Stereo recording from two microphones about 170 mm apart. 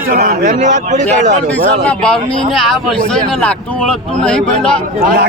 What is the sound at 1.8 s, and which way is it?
Speech, 5° left (ahead or behind).